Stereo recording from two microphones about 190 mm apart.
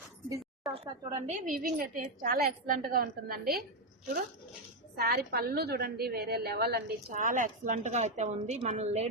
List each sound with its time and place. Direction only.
0.7 s a woman's voice: 25° right (ahead or behind)
1.3 s a woman's voice: 40° right (ahead or behind)
4.9 s a woman's voice: 55° right (ahead or behind); by 9.0 s 35° right (ahead or behind)